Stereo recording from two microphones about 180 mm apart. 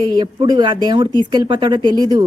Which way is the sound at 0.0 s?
25° right (ahead or behind).